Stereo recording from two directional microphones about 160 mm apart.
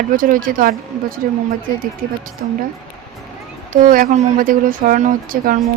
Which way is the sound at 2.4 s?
55° right (ahead or behind).